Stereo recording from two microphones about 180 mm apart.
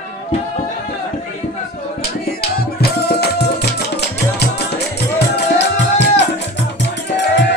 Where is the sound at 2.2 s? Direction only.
60° left (ahead or behind).